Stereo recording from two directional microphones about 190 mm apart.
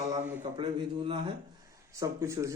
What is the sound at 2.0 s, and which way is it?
Speech, 15° right (ahead or behind).